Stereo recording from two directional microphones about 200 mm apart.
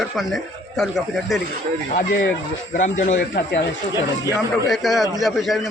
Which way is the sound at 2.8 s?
40° left (ahead or behind).